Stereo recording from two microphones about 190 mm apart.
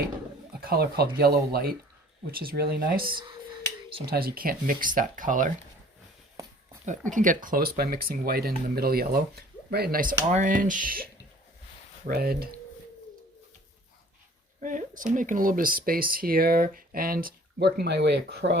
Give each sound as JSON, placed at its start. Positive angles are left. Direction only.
{"t": 0.6, "sound": "speech", "side_deg": -55}
{"t": 3.0, "sound": "speech", "side_deg": -25}
{"t": 4.0, "sound": "speech", "side_deg": -55}
{"t": 7.1, "sound": "speech", "side_deg": -45}
{"t": 12.0, "sound": "speech", "side_deg": -55}
{"t": 14.6, "sound": "speech", "side_deg": -45}